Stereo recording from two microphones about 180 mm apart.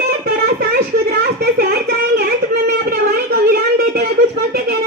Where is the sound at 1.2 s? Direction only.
60° right (ahead or behind).